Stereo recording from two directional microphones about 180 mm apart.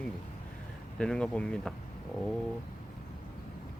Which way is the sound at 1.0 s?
5° left (ahead or behind).